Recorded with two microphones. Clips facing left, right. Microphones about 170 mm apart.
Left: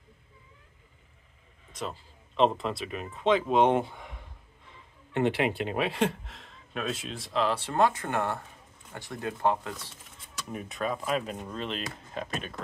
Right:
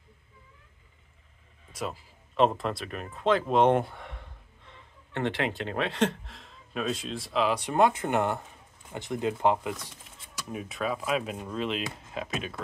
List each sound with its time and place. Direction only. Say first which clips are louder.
1.7 s speech: right 2 dB; 5° right (ahead or behind)
5.1 s speech: left 3 dB; 15° left (ahead or behind); by 9.8 s 15° right (ahead or behind)
10.3 s speech: right 1 dB; 5° right (ahead or behind)